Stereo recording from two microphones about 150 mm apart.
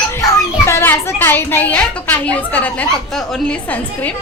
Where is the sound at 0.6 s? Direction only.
15° left (ahead or behind).